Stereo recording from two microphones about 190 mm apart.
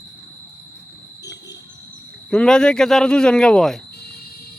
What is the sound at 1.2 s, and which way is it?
Music, 65° left (ahead or behind).